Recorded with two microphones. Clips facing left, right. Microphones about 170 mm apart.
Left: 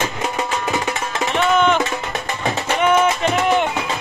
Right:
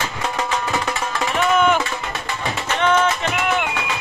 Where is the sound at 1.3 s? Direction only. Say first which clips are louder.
Left 1 dB; 5° right (ahead or behind).